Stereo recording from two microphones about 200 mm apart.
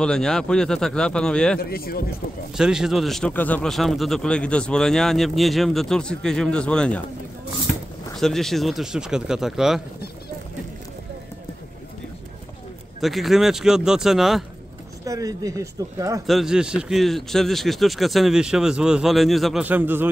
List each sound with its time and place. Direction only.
0.0 s speech: 5° left (ahead or behind)
1.6 s speech: 50° left (ahead or behind)
2.5 s speech: 5° right (ahead or behind)
8.2 s speech: centre (ahead or behind)
13.0 s speech: centre (ahead or behind)
15.0 s speech: 15° right (ahead or behind)
16.3 s speech: centre (ahead or behind)